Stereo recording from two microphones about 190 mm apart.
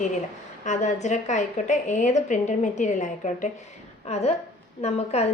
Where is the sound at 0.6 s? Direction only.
40° left (ahead or behind).